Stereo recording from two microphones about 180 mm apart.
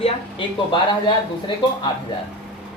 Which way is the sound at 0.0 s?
25° left (ahead or behind).